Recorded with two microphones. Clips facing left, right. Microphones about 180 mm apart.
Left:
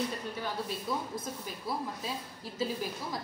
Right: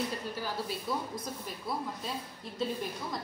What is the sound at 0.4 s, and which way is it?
Female singing, centre (ahead or behind).